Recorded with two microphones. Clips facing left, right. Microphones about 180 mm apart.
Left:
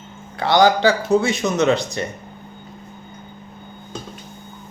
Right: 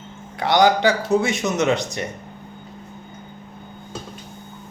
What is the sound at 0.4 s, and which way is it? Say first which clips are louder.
A man's voice: left 1 dB; 20° right (ahead or behind).